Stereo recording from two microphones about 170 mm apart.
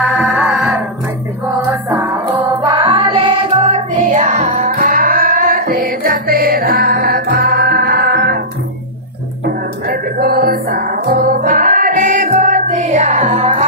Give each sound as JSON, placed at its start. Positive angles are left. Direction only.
{"t": 0.0, "sound": "music", "side_deg": -10}
{"t": 3.6, "sound": "music", "side_deg": -40}
{"t": 9.8, "sound": "music", "side_deg": -60}